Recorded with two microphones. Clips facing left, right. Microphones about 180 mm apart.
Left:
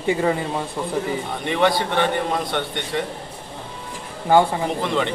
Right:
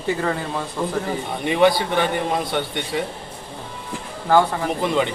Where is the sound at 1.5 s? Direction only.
5° right (ahead or behind).